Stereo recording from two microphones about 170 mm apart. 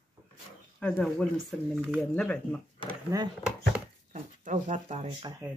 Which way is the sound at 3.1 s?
20° right (ahead or behind).